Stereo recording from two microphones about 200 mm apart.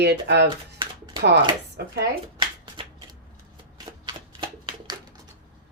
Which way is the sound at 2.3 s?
25° right (ahead or behind).